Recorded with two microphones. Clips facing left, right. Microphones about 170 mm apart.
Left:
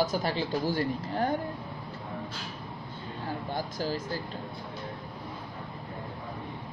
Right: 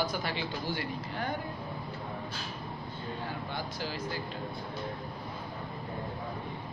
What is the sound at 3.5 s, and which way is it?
Speech, 40° left (ahead or behind).